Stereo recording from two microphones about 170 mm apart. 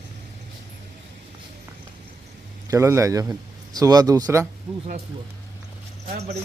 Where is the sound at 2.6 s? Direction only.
15° right (ahead or behind).